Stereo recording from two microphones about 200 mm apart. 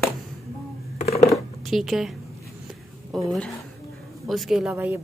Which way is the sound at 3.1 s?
Centre (ahead or behind).